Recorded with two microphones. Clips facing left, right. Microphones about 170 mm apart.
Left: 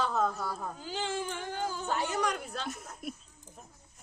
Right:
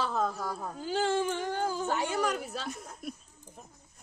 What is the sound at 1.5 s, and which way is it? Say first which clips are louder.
Whimper: right 4 dB; 40° right (ahead or behind).